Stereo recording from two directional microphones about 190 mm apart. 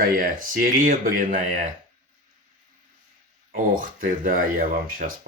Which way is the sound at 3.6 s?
45° right (ahead or behind).